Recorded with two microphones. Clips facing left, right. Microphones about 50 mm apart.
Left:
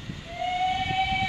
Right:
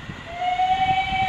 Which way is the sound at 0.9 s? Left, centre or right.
Right.